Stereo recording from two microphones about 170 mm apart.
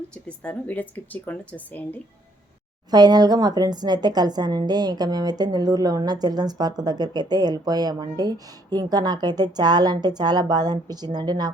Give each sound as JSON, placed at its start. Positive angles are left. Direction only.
{"t": 0.1, "sound": "speech", "side_deg": 5}
{"t": 2.9, "sound": "a woman's voice", "side_deg": -25}